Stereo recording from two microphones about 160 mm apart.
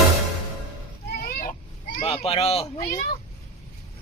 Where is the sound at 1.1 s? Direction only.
65° left (ahead or behind).